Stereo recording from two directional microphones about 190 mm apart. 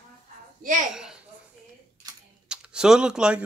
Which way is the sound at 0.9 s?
5° right (ahead or behind).